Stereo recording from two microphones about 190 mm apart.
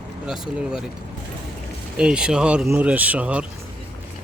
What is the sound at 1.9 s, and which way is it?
Speech, 5° right (ahead or behind).